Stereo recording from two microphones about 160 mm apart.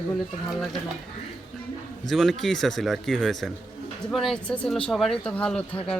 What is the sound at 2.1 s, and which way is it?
Speech, centre (ahead or behind).